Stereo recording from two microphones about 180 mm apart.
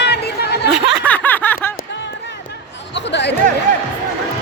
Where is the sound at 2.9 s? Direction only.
75° left (ahead or behind).